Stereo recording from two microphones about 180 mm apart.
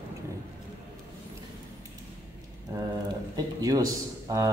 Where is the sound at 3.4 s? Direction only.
20° right (ahead or behind).